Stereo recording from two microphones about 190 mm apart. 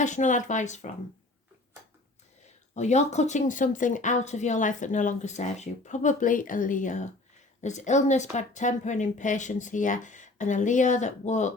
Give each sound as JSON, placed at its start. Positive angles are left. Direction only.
{"t": 0.0, "sound": "speech", "side_deg": 40}
{"t": 2.7, "sound": "speech", "side_deg": 35}